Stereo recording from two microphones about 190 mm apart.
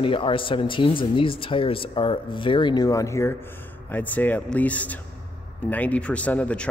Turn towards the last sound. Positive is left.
turn(degrees=5)  # may be behind; listen again after turning